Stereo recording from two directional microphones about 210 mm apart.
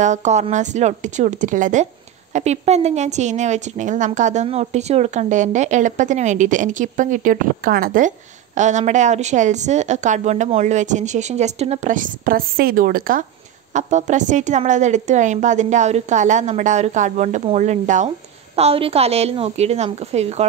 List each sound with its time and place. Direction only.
0.0 s a woman's voice: 35° right (ahead or behind)